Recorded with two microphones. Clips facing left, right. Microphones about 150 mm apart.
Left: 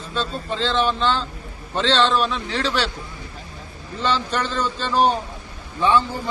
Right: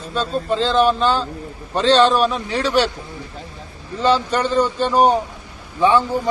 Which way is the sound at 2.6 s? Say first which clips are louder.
Right 7 dB; 15° right (ahead or behind).